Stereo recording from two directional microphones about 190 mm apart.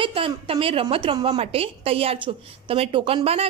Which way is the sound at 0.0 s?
30° right (ahead or behind).